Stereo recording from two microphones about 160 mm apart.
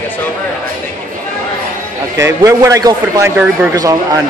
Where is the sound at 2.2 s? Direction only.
20° right (ahead or behind).